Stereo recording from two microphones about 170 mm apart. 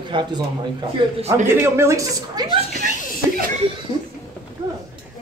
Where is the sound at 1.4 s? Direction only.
15° right (ahead or behind).